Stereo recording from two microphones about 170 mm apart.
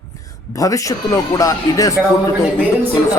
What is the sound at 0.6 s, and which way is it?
Speech, 20° left (ahead or behind).